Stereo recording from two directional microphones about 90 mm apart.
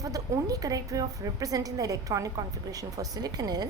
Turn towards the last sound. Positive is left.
turn(degrees=-45)  # may be behind; listen again after turning